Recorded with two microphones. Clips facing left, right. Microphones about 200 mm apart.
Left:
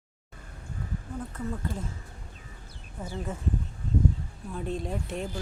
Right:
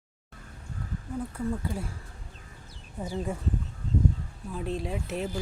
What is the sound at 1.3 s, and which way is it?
Speech, 10° right (ahead or behind).